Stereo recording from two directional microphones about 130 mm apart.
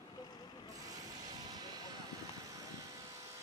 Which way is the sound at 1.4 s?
30° right (ahead or behind).